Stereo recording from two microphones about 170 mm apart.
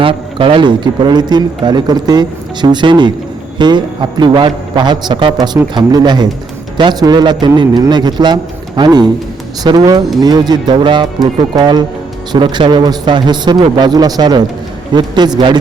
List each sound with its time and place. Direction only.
0.0 s speech: 30° right (ahead or behind)